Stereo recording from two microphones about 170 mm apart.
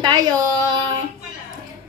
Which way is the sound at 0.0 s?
25° right (ahead or behind).